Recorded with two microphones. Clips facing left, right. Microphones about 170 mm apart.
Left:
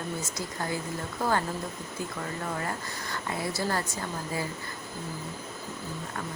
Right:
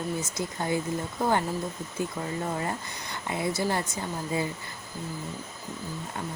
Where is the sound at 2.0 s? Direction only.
20° right (ahead or behind).